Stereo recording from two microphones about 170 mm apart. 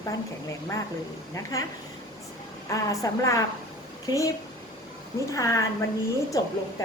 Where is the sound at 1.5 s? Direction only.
20° left (ahead or behind).